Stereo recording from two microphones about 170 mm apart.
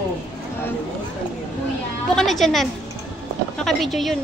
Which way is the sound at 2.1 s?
Centre (ahead or behind).